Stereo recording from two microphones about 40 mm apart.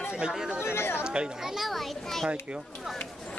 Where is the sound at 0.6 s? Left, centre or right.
Left.